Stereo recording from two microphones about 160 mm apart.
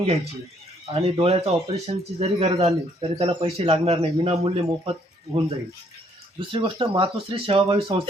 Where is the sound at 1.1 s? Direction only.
40° right (ahead or behind).